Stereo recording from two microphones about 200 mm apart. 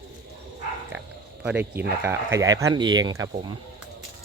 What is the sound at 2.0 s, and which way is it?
Speech, 10° right (ahead or behind).